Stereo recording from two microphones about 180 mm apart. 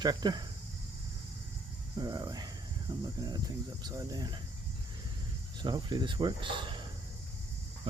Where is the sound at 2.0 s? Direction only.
20° right (ahead or behind).